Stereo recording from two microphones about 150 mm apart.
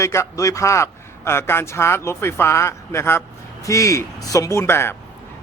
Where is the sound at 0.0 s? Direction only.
20° left (ahead or behind).